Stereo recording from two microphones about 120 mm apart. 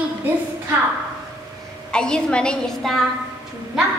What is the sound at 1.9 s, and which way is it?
A woman's voice, 5° left (ahead or behind).